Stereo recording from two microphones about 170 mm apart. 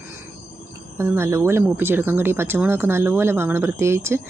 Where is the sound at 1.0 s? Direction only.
15° right (ahead or behind).